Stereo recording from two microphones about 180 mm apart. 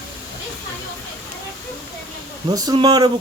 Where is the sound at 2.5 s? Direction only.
25° right (ahead or behind).